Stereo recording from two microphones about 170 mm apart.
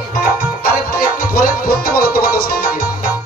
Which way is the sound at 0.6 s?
60° left (ahead or behind).